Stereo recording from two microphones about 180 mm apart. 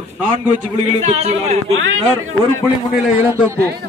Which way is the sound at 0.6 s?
40° right (ahead or behind).